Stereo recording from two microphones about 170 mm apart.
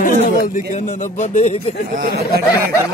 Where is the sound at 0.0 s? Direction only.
50° left (ahead or behind).